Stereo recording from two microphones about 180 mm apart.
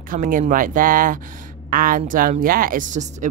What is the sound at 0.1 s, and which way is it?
Speech, 50° right (ahead or behind).